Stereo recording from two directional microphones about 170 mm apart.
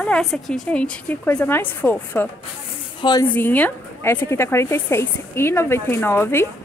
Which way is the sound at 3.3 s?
10° left (ahead or behind).